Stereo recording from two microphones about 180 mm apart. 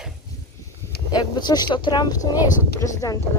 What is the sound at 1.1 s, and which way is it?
Speech, 20° left (ahead or behind).